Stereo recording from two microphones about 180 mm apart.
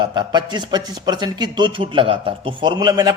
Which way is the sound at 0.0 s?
25° right (ahead or behind).